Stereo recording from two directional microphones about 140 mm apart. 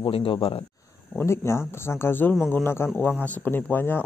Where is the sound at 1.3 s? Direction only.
20° left (ahead or behind).